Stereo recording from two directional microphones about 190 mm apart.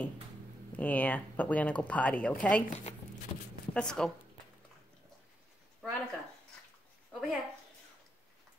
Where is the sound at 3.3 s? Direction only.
30° left (ahead or behind).